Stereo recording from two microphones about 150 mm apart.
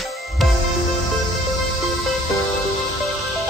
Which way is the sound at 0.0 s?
Centre (ahead or behind).